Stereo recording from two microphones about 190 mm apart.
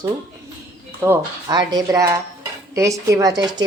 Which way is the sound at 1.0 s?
15° right (ahead or behind).